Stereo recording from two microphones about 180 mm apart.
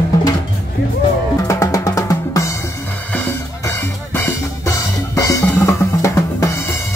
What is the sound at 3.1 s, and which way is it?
Drum kit, 10° left (ahead or behind).